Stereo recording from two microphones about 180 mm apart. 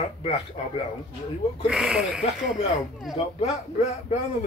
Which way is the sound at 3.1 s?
40° left (ahead or behind).